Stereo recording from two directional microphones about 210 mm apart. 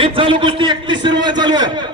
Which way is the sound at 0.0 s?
25° right (ahead or behind).